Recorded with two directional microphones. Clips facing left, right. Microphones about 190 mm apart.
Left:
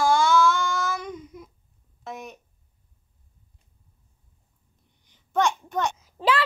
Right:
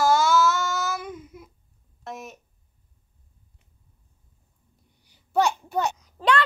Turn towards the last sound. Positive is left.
turn(degrees=5)  # may be behind; listen again after turning